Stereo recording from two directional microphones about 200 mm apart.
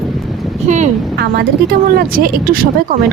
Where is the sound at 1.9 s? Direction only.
45° right (ahead or behind).